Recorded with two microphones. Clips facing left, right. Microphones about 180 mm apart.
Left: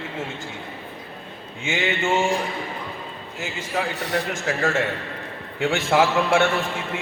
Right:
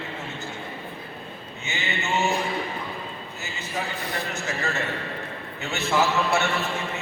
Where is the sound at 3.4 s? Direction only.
85° left.